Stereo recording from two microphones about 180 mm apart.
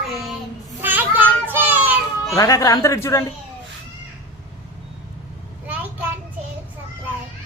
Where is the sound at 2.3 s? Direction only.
20° left (ahead or behind).